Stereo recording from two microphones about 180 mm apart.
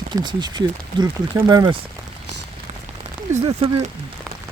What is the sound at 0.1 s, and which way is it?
Speech, 25° right (ahead or behind).